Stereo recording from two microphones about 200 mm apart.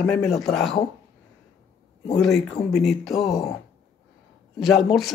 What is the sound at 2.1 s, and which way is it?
Speech, centre (ahead or behind).